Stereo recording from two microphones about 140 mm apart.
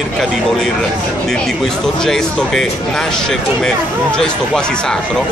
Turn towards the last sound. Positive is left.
turn(degrees=5)  # may be behind; listen again after turning